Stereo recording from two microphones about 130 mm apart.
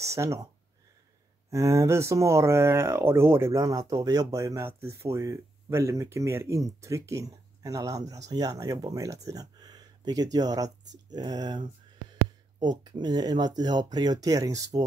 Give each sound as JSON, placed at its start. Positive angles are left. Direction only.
{"t": 0.0, "sound": "speech", "side_deg": -20}
{"t": 1.5, "sound": "speech", "side_deg": -20}